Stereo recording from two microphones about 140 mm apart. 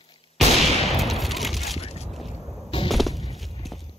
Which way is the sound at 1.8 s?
50° left (ahead or behind).